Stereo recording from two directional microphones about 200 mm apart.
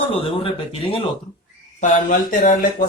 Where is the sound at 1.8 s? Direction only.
40° left (ahead or behind).